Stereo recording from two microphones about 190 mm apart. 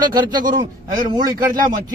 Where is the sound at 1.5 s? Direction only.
45° right (ahead or behind).